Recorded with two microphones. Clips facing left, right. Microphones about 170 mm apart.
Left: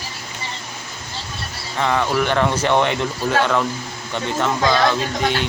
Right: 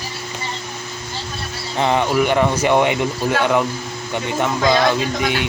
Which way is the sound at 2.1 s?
10° right (ahead or behind).